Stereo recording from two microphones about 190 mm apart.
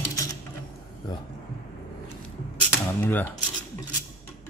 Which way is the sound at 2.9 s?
10° left (ahead or behind).